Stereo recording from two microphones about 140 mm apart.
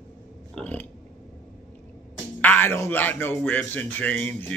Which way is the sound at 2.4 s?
10° left (ahead or behind).